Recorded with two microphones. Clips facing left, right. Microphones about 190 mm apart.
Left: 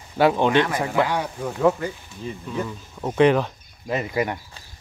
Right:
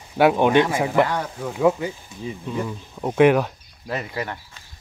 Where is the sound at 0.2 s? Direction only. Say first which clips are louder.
Right 2 dB; 10° right (ahead or behind).